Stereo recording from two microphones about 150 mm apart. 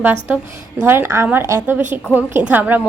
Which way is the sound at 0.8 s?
15° right (ahead or behind).